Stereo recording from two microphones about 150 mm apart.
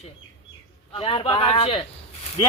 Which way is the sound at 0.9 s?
35° left (ahead or behind).